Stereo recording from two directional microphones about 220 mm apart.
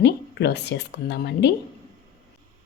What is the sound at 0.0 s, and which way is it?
Speech, 50° left (ahead or behind).